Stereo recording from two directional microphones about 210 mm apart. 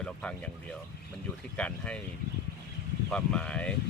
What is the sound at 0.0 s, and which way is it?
Speech, 5° left (ahead or behind).